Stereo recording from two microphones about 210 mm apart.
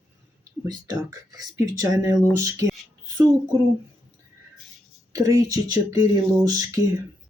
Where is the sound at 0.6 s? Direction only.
15° right (ahead or behind).